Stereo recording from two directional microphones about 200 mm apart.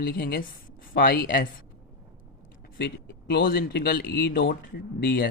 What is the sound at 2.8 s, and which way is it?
Speech, 55° left (ahead or behind).